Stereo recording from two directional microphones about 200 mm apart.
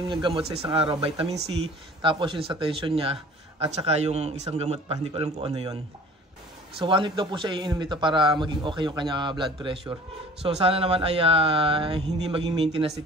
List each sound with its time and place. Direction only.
0.0 s speech: 25° right (ahead or behind)
6.8 s speech: 25° right (ahead or behind)